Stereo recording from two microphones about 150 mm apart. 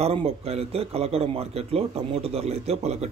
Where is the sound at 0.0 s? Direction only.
40° right (ahead or behind).